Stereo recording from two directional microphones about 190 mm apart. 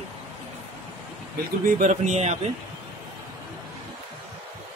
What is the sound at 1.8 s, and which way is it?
Speech, 40° right (ahead or behind).